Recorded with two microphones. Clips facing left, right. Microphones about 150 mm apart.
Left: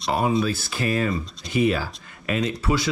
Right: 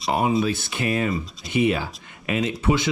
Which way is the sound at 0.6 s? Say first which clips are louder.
Even; 20° right (ahead or behind).